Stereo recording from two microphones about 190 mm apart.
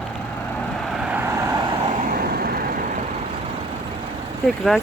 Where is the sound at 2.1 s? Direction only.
50° right (ahead or behind).